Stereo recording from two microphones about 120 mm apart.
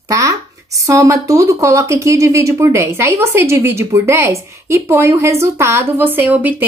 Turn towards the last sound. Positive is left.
turn(degrees=-15)  # may be behind; listen again after turning